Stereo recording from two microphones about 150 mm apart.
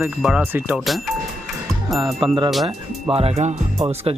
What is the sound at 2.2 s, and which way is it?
Speech, 30° right (ahead or behind).